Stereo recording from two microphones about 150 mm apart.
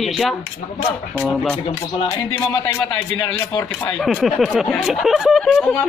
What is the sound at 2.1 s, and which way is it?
A woman's voice, 15° left (ahead or behind).